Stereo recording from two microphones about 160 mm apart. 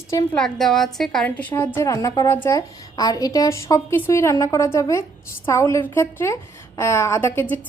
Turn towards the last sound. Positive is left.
turn(degrees=10)  # may be behind; listen again after turning